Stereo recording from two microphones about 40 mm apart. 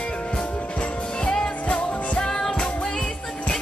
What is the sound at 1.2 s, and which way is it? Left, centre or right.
Music, left.